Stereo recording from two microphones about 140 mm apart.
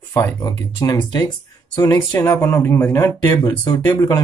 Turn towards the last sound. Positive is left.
turn(degrees=20)  # may be behind; listen again after turning